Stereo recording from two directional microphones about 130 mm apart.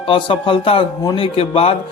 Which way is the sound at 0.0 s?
40° left (ahead or behind).